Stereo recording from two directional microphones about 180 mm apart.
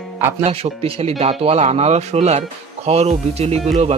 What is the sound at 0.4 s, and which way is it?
Speech, 35° right (ahead or behind).